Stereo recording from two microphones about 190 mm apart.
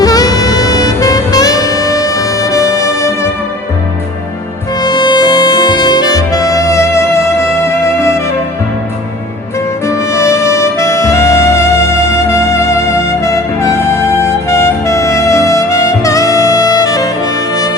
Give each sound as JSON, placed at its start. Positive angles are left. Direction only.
{"t": 0.0, "sound": "saxophone", "side_deg": 20}
{"t": 4.8, "sound": "music", "side_deg": 20}
{"t": 9.8, "sound": "saxophone", "side_deg": 15}
{"t": 12.1, "sound": "music", "side_deg": 15}